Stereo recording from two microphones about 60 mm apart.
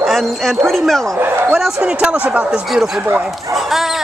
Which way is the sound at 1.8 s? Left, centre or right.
Centre.